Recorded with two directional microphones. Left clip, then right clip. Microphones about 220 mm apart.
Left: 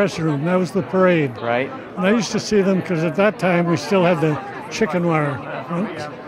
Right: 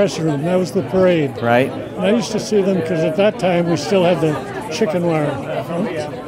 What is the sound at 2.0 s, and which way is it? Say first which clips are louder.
Speech: right 2 dB; 30° left (ahead or behind).